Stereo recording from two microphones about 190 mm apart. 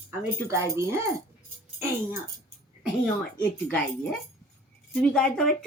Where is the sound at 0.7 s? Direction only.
15° right (ahead or behind).